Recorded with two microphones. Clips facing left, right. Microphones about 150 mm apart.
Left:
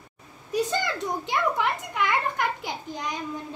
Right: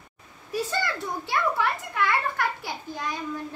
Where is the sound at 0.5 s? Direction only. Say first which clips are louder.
Left 2 dB; 20° left (ahead or behind).